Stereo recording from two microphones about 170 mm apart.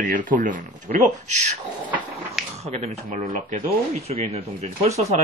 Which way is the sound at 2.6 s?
40° right (ahead or behind).